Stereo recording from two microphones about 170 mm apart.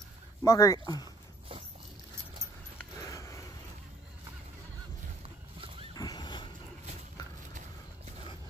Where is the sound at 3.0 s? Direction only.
20° left (ahead or behind).